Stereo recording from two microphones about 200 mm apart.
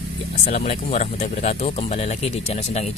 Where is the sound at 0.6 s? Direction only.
30° left (ahead or behind).